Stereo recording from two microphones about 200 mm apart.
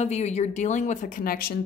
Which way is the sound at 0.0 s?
35° left (ahead or behind).